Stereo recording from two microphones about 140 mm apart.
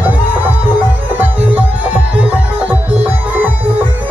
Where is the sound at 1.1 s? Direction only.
10° right (ahead or behind).